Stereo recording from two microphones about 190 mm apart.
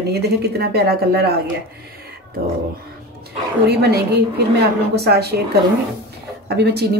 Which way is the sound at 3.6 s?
60° right (ahead or behind).